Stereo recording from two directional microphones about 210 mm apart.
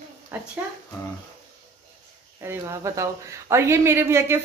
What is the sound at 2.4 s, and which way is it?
A woman's voice, 15° right (ahead or behind).